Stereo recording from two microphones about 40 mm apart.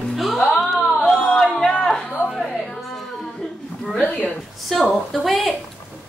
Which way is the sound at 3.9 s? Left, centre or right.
Left.